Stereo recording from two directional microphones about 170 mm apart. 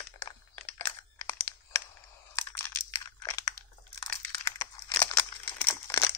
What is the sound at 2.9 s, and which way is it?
Crunch, 20° left (ahead or behind).